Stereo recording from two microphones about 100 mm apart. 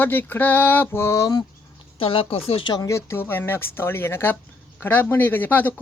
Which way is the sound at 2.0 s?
70° left (ahead or behind).